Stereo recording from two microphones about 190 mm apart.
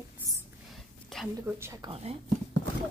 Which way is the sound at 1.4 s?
15° right (ahead or behind).